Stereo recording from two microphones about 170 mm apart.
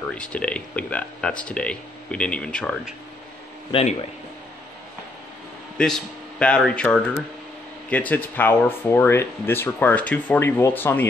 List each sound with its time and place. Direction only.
0.1 s speech: 5° left (ahead or behind)
3.7 s speech: 30° left (ahead or behind)
5.8 s speech: 5° left (ahead or behind)